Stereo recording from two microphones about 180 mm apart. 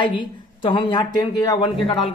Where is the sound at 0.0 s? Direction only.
25° left (ahead or behind).